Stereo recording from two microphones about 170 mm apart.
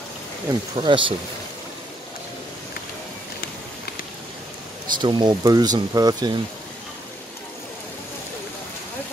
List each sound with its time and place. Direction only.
0.5 s speech: 30° right (ahead or behind)
5.0 s speech: 25° right (ahead or behind)